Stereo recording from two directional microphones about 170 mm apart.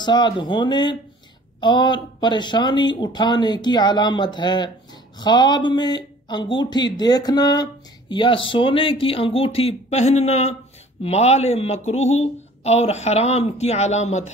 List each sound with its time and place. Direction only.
0.0 s speech: 25° left (ahead or behind); by 14.3 s 45° left (ahead or behind)